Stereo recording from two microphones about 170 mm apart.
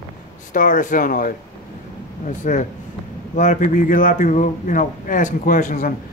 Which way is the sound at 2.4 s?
45° left (ahead or behind).